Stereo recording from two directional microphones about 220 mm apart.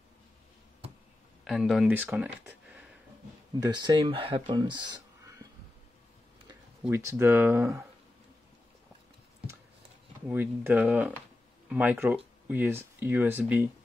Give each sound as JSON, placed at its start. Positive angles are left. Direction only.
{"t": 1.4, "sound": "speech", "side_deg": 0}
{"t": 3.5, "sound": "speech", "side_deg": -20}
{"t": 6.8, "sound": "speech", "side_deg": -10}
{"t": 10.2, "sound": "speech", "side_deg": -10}